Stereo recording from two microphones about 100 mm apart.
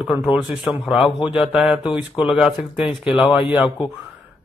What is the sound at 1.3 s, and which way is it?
Speech, 5° right (ahead or behind).